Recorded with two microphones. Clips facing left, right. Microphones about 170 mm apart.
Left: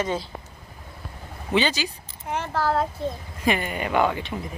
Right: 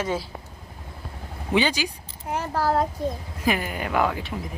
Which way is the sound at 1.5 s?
10° right (ahead or behind).